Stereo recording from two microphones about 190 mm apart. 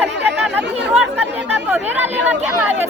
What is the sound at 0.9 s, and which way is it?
Speech, 10° right (ahead or behind).